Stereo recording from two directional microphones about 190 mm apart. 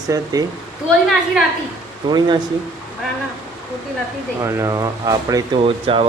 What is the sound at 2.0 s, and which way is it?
Speech, 25° right (ahead or behind).